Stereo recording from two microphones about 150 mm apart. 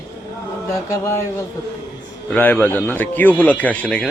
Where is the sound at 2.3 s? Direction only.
10° left (ahead or behind).